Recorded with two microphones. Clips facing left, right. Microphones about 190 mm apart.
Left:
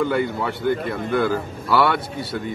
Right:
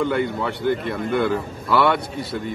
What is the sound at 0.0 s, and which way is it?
A man's voice, centre (ahead or behind).